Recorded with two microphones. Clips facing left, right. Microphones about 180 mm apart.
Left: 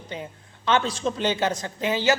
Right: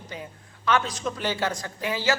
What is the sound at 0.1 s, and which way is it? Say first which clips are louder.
A man's voice: left 4 dB; 25° left (ahead or behind).